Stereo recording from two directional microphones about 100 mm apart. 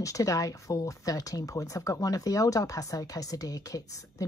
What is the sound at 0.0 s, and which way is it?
Speech, 35° left (ahead or behind).